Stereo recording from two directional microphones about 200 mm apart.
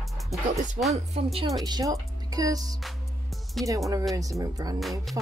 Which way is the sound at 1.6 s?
20° right (ahead or behind).